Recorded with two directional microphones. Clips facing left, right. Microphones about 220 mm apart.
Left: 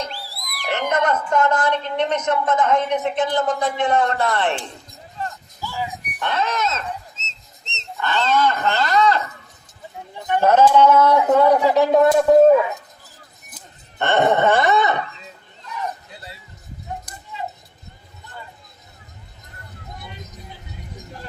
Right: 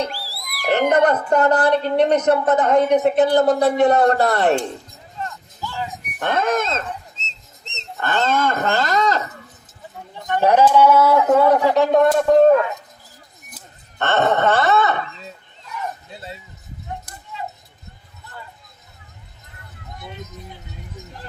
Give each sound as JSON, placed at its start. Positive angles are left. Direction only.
{"t": 0.1, "sound": "a sound", "side_deg": -10}
{"t": 0.7, "sound": "a woman's voice", "side_deg": -35}
{"t": 5.2, "sound": "a sound", "side_deg": 30}
{"t": 5.5, "sound": "a sound", "side_deg": 10}
{"t": 6.1, "sound": "speech", "side_deg": -50}
{"t": 7.2, "sound": "whistle", "side_deg": -35}
{"t": 7.9, "sound": "speech", "side_deg": -50}
{"t": 10.4, "sound": "a man's voice", "side_deg": -15}
{"t": 14.0, "sound": "speech", "side_deg": 15}
{"t": 16.0, "sound": "bow-wow", "side_deg": -25}